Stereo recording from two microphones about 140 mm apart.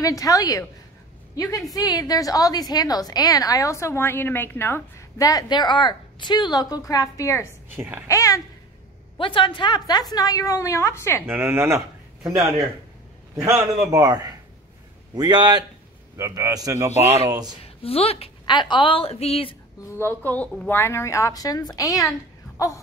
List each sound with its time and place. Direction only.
0.0 s a woman's voice: 25° left (ahead or behind)
7.7 s a woman's voice: 15° right (ahead or behind)
8.1 s a woman's voice: 25° left (ahead or behind)
9.2 s a woman's voice: 35° left (ahead or behind); by 11.2 s 20° left (ahead or behind)
11.2 s speech: 15° right (ahead or behind)
13.8 s a man's voice: 25° right (ahead or behind)
17.8 s a woman's voice: 45° left (ahead or behind)
19.9 s a woman's voice: 15° left (ahead or behind)